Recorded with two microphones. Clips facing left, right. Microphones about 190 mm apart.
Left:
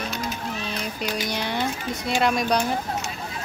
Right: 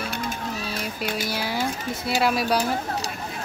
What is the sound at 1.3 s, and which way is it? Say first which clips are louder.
Speech: even; 5° right (ahead or behind).